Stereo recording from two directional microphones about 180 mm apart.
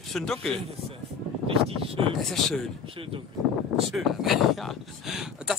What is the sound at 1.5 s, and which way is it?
Speech, 30° right (ahead or behind).